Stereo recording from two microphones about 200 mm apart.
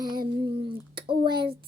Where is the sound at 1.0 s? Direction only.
25° right (ahead or behind).